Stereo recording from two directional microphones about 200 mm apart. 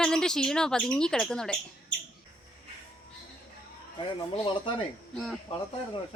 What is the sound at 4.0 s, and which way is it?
Speech, 25° left (ahead or behind).